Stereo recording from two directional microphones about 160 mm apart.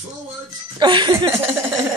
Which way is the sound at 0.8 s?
30° right (ahead or behind).